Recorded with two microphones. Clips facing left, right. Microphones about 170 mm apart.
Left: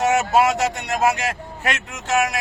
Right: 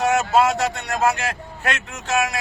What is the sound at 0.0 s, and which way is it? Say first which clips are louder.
Speech: even; 20° left (ahead or behind).